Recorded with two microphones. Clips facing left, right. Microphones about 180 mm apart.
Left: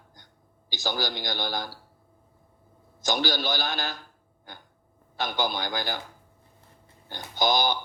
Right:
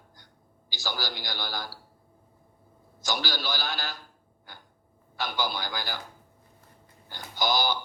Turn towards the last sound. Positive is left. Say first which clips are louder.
# left 3 dB
turn(degrees=20)  # may be behind; listen again after turning